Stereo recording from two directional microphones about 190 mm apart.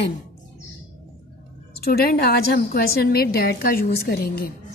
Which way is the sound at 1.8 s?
55° left (ahead or behind).